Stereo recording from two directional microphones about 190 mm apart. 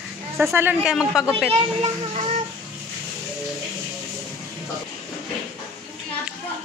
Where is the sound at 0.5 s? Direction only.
10° right (ahead or behind).